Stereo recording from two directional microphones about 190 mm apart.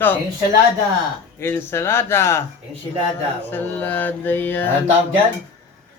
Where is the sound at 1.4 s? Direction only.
10° left (ahead or behind).